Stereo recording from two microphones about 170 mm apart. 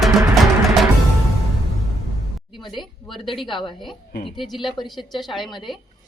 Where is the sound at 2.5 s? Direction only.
25° left (ahead or behind).